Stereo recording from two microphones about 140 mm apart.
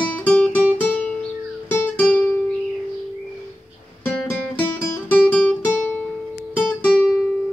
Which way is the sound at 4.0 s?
10° left (ahead or behind).